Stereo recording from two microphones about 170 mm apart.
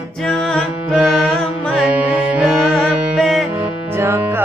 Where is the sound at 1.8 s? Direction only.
10° right (ahead or behind).